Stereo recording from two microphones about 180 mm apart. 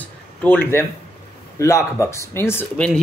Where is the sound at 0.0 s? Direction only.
10° left (ahead or behind).